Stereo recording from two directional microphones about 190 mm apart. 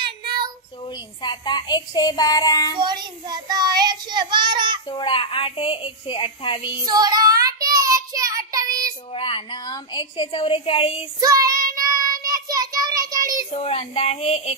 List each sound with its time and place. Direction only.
1.2 s speech: 25° left (ahead or behind)
2.8 s child singing: 25° right (ahead or behind)
4.8 s speech: 25° left (ahead or behind)
6.8 s child singing: 20° right (ahead or behind)
9.1 s speech: 30° left (ahead or behind)
11.1 s child singing: 20° right (ahead or behind)
13.5 s child singing: 30° left (ahead or behind)